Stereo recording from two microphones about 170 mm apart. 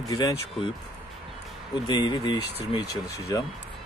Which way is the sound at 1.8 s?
25° left (ahead or behind).